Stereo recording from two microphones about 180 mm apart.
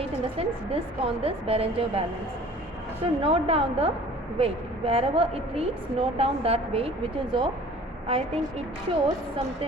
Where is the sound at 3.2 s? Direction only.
30° right (ahead or behind).